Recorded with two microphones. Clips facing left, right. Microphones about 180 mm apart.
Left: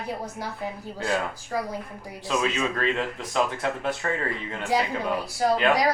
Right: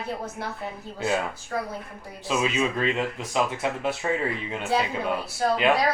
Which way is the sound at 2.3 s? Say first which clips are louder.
Right 1 dB; 15° right (ahead or behind).